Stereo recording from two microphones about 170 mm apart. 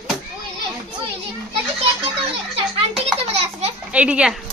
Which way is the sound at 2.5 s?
35° right (ahead or behind).